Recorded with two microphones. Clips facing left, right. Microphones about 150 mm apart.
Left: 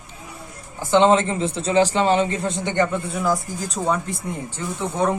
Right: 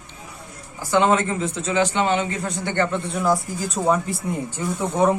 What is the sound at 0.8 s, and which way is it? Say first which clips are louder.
A man's voice: left 3 dB; 25° left (ahead or behind).